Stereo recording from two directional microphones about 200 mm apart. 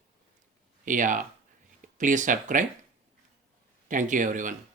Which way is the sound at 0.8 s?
40° right (ahead or behind).